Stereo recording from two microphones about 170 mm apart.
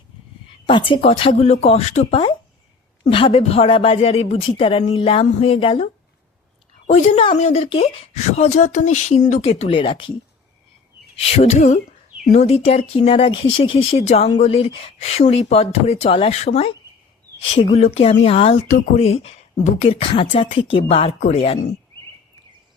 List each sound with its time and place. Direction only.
0.7 s speech: 30° left (ahead or behind)
11.2 s speech: 35° left (ahead or behind)